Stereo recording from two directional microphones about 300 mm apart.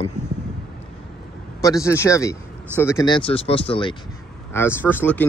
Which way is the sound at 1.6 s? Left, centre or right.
Centre.